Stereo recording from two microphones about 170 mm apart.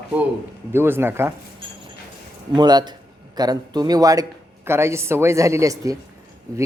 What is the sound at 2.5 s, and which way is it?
Speech, 25° right (ahead or behind).